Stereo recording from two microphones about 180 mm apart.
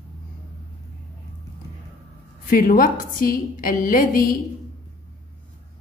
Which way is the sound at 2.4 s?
50° left (ahead or behind).